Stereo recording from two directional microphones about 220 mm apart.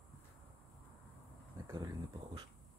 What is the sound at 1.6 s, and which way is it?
Speech, 15° right (ahead or behind).